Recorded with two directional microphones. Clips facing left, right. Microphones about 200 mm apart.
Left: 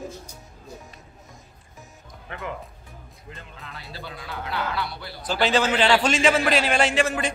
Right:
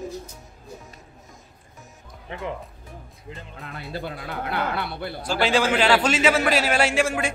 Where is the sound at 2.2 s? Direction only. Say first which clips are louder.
Right 3 dB; 25° right (ahead or behind).